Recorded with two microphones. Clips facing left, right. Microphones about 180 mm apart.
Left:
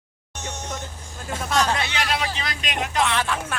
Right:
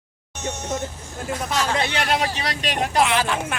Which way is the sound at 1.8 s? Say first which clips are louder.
Right 3 dB; 50° right (ahead or behind).